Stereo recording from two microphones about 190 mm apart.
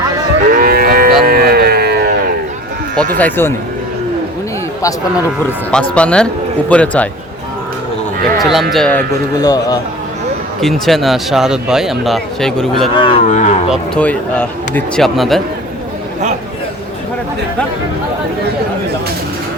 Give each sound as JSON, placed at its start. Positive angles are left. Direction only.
{"t": 0.5, "sound": "moo", "side_deg": -50}
{"t": 1.2, "sound": "a sound", "side_deg": -55}
{"t": 3.2, "sound": "speech", "side_deg": 10}
{"t": 5.5, "sound": "speech", "side_deg": 5}
{"t": 8.4, "sound": "speech", "side_deg": 0}
{"t": 9.4, "sound": "a man's voice", "side_deg": 20}
{"t": 10.6, "sound": "speech", "side_deg": 0}
{"t": 13.0, "sound": "cattle", "side_deg": 30}
{"t": 13.7, "sound": "speech", "side_deg": 5}